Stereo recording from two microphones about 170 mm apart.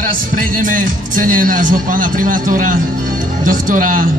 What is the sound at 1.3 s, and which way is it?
A man's voice, 55° right (ahead or behind).